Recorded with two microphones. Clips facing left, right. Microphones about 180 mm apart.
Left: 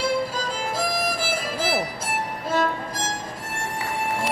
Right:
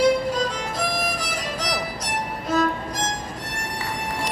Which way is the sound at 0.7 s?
25° left (ahead or behind).